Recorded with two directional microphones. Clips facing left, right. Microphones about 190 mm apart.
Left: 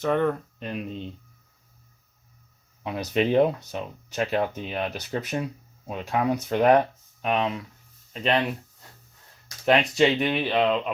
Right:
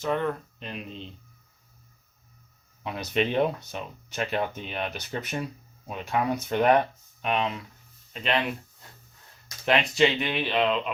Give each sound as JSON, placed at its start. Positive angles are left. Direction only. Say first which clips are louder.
{"t": 0.0, "sound": "speech", "louder": "left 4 dB", "side_deg": 55}
{"t": 2.8, "sound": "speech", "louder": "left 3 dB", "side_deg": 35}
{"t": 9.6, "sound": "speech", "louder": "left 3 dB", "side_deg": 40}